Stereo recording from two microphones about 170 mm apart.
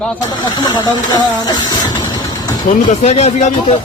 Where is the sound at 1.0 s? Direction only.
25° left (ahead or behind).